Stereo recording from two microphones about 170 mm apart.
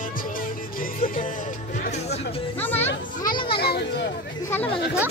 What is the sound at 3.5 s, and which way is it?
Children playing, 70° left (ahead or behind).